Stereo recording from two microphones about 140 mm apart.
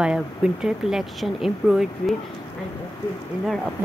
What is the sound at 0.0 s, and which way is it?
Speech, 5° right (ahead or behind).